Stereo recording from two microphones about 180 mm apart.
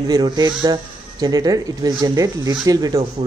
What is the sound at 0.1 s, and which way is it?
Speech, 25° right (ahead or behind).